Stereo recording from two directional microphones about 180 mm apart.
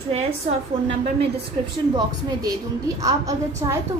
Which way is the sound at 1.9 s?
20° right (ahead or behind).